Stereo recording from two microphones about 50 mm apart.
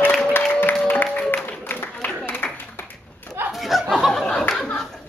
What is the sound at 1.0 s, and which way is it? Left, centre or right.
Music, left.